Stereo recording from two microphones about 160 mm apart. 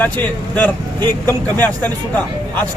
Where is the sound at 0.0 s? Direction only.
10° left (ahead or behind).